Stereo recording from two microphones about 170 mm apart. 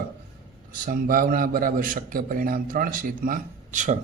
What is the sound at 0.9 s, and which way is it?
A man's voice, 60° right (ahead or behind).